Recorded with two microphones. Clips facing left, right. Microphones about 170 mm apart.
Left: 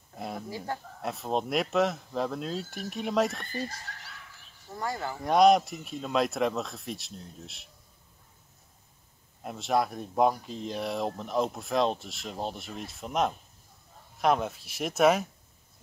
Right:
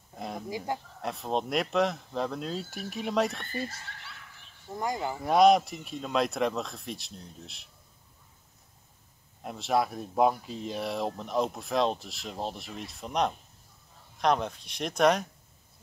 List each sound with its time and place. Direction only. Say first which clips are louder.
0.1 s a sound: even; centre (ahead or behind)
0.5 s speech: right 5 dB; 15° right (ahead or behind)
1.0 s speech: left 1 dB; centre (ahead or behind)
3.5 s speech: even; 40° left (ahead or behind)
4.7 s speech: right 2 dB; 15° right (ahead or behind)
5.2 s speech: even; centre (ahead or behind)
9.4 s speech: even; centre (ahead or behind)